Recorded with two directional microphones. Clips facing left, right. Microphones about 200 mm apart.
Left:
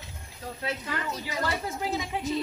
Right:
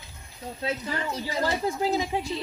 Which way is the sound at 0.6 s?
25° right (ahead or behind).